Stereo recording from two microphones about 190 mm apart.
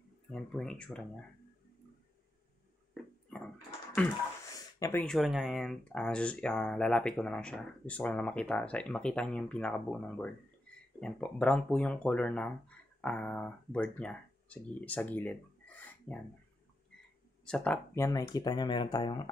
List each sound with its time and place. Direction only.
0.3 s speech: 5° left (ahead or behind)
2.9 s a sound: 5° left (ahead or behind)
4.7 s speech: 15° left (ahead or behind)
5.0 s speech: centre (ahead or behind)
17.5 s speech: 5° left (ahead or behind); by 19.3 s 25° left (ahead or behind)